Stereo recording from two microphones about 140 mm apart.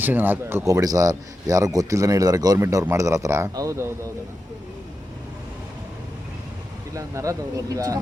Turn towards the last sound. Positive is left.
turn(degrees=-25)  # may be behind; listen again after turning